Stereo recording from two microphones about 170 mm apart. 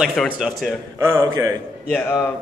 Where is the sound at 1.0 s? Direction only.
20° right (ahead or behind).